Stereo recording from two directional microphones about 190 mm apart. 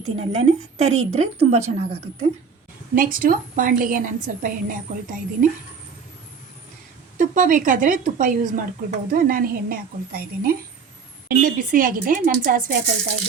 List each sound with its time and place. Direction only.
0.2 s a woman's voice: 35° right (ahead or behind)
2.9 s speech: 45° right (ahead or behind)
7.2 s speech: 45° right (ahead or behind)